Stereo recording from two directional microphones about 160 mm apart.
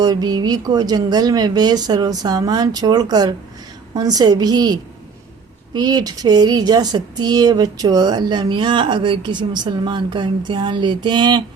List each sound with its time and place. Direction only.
0.0 s speech: 25° right (ahead or behind)